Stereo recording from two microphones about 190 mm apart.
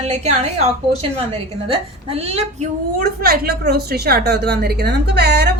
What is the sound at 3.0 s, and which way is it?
Speech, 55° right (ahead or behind).